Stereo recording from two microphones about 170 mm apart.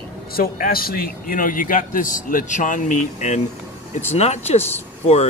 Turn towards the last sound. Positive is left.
turn(degrees=40)  # may be behind; listen again after turning